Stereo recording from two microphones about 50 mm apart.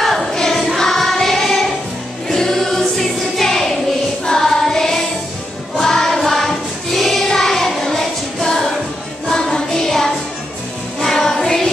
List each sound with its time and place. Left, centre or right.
0.0 s child singing: centre
2.2 s choir: centre
4.3 s singing: centre
5.8 s choir: centre
9.3 s music: centre